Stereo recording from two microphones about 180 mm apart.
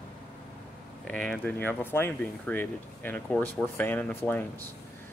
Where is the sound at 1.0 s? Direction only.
5° left (ahead or behind).